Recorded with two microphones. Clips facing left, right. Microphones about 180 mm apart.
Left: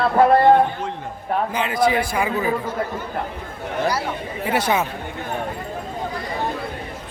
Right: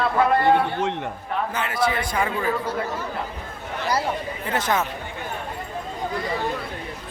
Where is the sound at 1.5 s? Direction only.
15° left (ahead or behind).